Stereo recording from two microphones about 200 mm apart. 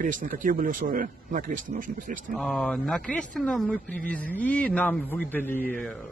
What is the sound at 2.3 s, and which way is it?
Speech, centre (ahead or behind).